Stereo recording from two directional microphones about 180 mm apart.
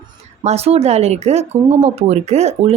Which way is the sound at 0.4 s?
35° right (ahead or behind).